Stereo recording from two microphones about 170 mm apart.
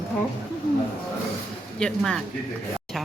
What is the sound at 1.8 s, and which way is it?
Speech, 5° left (ahead or behind).